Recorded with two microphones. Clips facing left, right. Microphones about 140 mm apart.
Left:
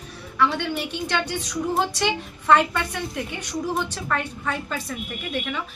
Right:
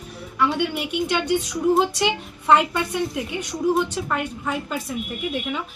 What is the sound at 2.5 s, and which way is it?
A woman's voice, 20° right (ahead or behind).